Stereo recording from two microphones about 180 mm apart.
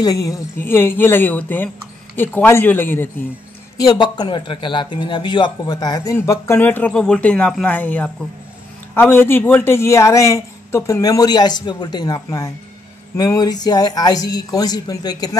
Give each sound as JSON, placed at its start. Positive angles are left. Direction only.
{"t": 0.0, "sound": "speech", "side_deg": 20}